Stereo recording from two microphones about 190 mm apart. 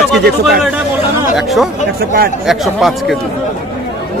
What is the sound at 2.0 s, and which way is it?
Speech, 55° right (ahead or behind).